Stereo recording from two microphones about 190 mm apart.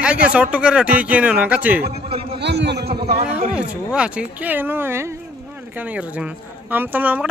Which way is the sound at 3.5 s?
5° right (ahead or behind).